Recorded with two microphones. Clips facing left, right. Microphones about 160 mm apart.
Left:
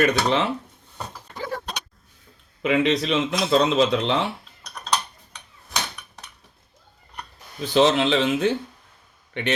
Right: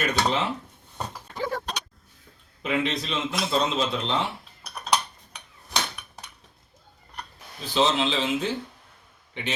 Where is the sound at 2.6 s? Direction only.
70° left (ahead or behind).